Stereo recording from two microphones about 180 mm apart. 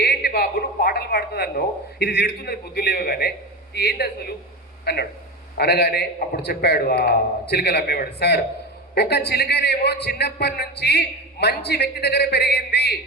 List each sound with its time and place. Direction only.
0.0 s a man's voice: 65° left (ahead or behind)